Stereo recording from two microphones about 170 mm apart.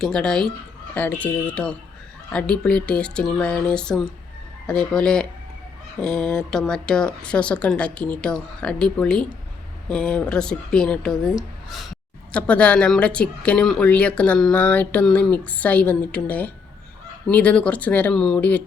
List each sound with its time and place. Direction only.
0.0 s speech: 5° left (ahead or behind)